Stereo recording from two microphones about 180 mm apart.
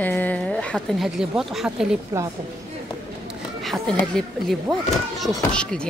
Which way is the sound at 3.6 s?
5° left (ahead or behind).